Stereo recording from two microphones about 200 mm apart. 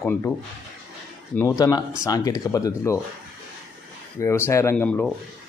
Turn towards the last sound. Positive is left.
turn(degrees=10)  # may be behind; listen again after turning